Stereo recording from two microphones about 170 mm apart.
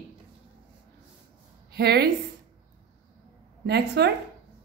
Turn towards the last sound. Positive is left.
turn(degrees=-75)  # may be behind; listen again after turning